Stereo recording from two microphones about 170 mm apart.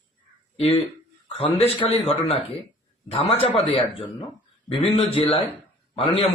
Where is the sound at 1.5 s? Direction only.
35° left (ahead or behind).